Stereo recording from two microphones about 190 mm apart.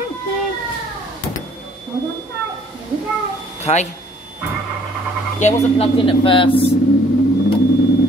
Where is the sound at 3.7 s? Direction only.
35° left (ahead or behind).